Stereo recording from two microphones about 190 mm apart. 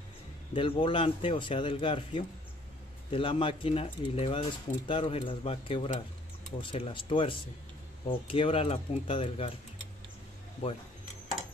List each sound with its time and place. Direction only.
0.5 s speech: 30° left (ahead or behind)